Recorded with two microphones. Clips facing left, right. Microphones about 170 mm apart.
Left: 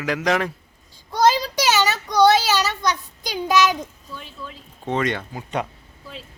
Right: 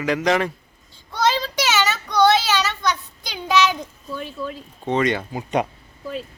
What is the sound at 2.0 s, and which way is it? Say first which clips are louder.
Child singing: left 1 dB; 10° left (ahead or behind).